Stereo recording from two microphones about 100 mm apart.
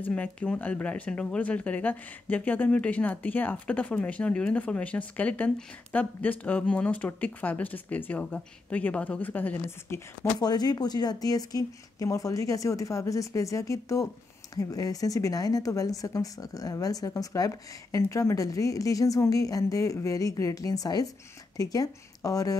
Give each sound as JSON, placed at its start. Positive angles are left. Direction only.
{"t": 0.0, "sound": "speech", "side_deg": 15}
{"t": 10.4, "sound": "speech", "side_deg": 40}